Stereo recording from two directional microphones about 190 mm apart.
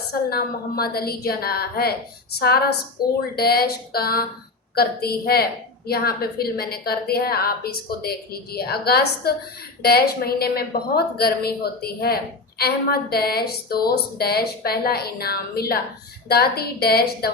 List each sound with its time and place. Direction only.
0.1 s a woman's voice: 55° left (ahead or behind)